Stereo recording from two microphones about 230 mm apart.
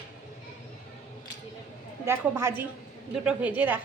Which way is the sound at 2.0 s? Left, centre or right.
Centre.